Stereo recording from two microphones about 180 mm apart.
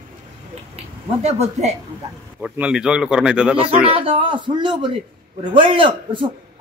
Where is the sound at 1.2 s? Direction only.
35° right (ahead or behind).